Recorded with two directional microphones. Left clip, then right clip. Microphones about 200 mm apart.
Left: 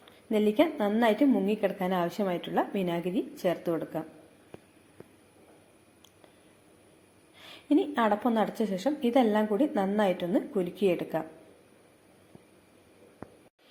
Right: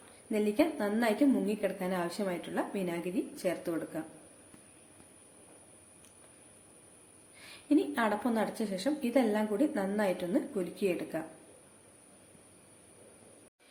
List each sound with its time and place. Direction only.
0.3 s a woman's voice: 20° left (ahead or behind)
7.4 s a woman's voice: 15° left (ahead or behind)